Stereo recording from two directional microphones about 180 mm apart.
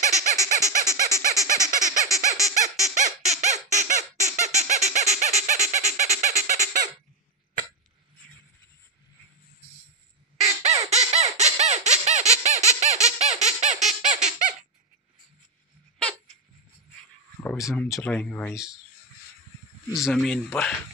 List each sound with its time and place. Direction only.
0.0 s a sound: 40° right (ahead or behind)
1.2 s baby laughter: 45° right (ahead or behind)
2.8 s a sound: 40° right (ahead or behind)
10.4 s crow: 35° right (ahead or behind)
10.9 s squawk: 35° right (ahead or behind)
17.4 s speech: 10° left (ahead or behind)
19.9 s speech: centre (ahead or behind)